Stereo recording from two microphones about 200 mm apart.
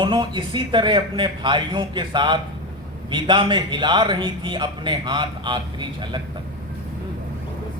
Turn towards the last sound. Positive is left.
turn(degrees=-25)  # may be behind; listen again after turning